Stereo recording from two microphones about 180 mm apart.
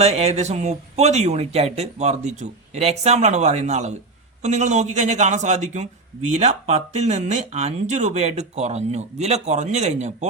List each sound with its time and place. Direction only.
0.0 s speech: 35° right (ahead or behind)